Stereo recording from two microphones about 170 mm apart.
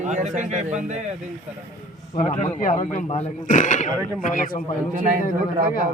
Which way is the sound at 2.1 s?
40° left (ahead or behind).